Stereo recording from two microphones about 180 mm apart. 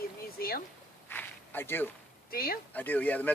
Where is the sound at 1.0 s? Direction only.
10° left (ahead or behind).